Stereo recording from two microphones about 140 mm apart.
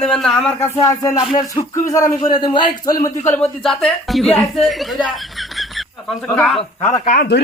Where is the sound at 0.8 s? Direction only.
25° left (ahead or behind).